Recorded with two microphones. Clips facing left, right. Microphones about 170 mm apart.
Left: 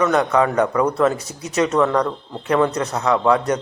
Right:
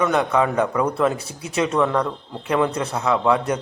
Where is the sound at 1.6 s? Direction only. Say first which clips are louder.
Left 2 dB; 10° right (ahead or behind).